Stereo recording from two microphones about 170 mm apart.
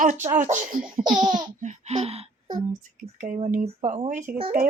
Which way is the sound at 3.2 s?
50° right (ahead or behind).